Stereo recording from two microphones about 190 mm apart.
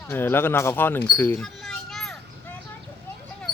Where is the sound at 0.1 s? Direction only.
10° left (ahead or behind).